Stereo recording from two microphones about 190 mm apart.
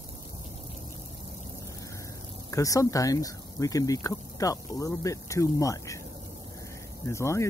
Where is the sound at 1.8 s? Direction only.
15° left (ahead or behind).